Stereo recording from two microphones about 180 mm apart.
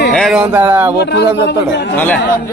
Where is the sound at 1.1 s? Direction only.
70° left (ahead or behind).